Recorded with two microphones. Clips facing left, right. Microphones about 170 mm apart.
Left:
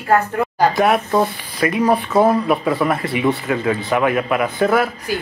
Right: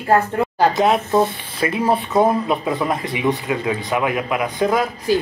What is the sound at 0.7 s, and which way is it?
Speech, 25° right (ahead or behind).